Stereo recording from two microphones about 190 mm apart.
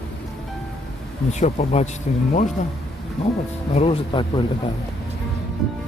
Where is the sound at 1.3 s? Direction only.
40° left (ahead or behind).